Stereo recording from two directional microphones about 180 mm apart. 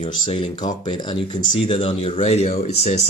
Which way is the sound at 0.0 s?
30° left (ahead or behind).